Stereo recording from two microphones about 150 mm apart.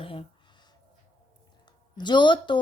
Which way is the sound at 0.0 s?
35° left (ahead or behind).